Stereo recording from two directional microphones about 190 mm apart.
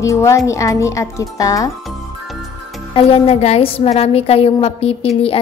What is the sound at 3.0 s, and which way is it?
A woman's voice, 35° left (ahead or behind).